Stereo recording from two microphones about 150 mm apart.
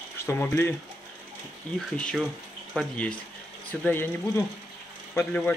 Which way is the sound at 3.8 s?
15° left (ahead or behind).